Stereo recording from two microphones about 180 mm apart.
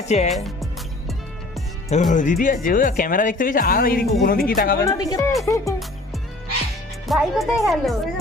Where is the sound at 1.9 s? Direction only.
45° left (ahead or behind).